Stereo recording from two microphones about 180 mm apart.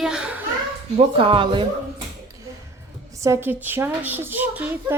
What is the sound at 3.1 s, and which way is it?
A woman's voice, 15° right (ahead or behind).